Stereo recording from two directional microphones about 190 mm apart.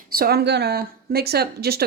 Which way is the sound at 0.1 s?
55° right (ahead or behind).